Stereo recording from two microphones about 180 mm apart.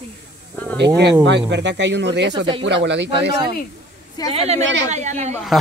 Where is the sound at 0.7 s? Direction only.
75° right (ahead or behind).